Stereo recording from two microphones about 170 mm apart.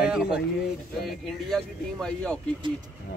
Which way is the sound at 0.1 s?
5° right (ahead or behind).